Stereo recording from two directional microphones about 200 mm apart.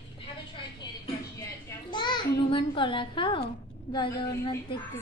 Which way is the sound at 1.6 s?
20° left (ahead or behind).